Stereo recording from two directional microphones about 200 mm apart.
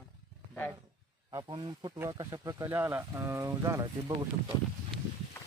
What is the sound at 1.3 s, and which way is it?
Speech, 20° right (ahead or behind).